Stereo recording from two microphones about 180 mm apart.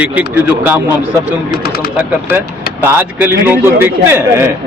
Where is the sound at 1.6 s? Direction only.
60° left (ahead or behind).